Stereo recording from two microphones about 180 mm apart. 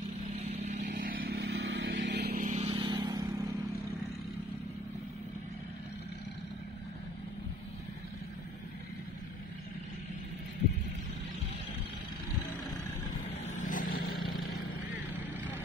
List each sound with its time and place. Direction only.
0.5 s vehicle: 40° right (ahead or behind); by 1.9 s 90° right
2.0 s vehicle: 75° right (ahead or behind)
2.3 s vehicle: 40° right (ahead or behind); by 3.4 s 20° right (ahead or behind)
13.5 s vehicle: 45° left (ahead or behind)